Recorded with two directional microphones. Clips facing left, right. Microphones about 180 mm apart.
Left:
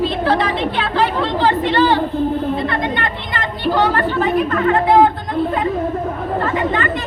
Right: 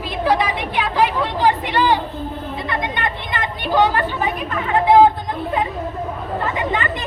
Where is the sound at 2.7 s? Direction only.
15° right (ahead or behind).